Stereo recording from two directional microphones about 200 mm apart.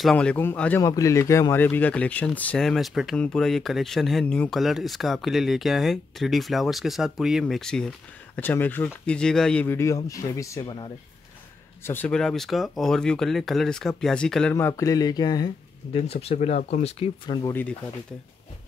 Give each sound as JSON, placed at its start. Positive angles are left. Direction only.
{"t": 0.0, "sound": "speech", "side_deg": 5}
{"t": 11.8, "sound": "speech", "side_deg": 10}
{"t": 17.5, "sound": "speech", "side_deg": 10}